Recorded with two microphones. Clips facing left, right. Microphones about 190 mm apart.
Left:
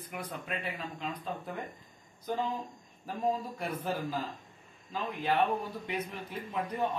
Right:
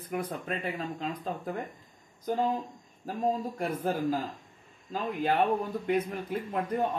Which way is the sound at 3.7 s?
50° right (ahead or behind).